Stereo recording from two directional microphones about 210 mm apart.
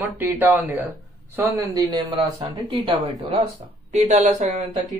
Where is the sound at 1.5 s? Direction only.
15° right (ahead or behind).